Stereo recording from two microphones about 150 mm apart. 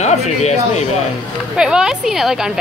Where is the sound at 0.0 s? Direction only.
50° left (ahead or behind).